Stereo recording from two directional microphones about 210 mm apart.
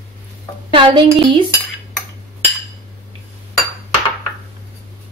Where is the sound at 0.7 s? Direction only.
20° right (ahead or behind).